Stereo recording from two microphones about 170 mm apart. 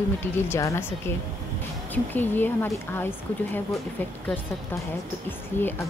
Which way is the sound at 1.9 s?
10° left (ahead or behind).